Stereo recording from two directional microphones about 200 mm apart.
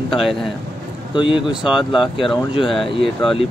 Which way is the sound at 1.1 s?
25° left (ahead or behind).